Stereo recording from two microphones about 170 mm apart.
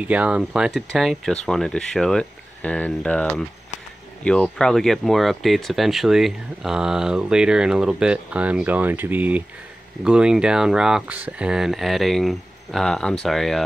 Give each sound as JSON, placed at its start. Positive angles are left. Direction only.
{"t": 0.1, "sound": "speech", "side_deg": -5}